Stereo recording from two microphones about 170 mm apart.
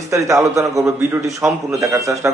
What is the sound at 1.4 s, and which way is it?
Speech, 5° right (ahead or behind).